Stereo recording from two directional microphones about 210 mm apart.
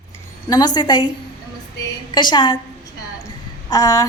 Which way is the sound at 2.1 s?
20° left (ahead or behind).